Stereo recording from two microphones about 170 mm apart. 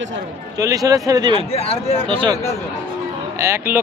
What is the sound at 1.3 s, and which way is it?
Speech, 35° left (ahead or behind).